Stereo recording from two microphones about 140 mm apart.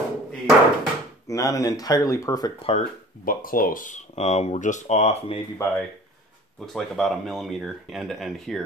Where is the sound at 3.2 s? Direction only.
85° left; by 5.3 s 50° left (ahead or behind).